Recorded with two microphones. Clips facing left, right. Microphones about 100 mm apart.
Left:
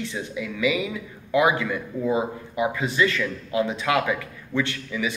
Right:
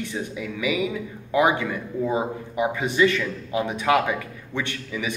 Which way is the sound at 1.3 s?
30° right (ahead or behind).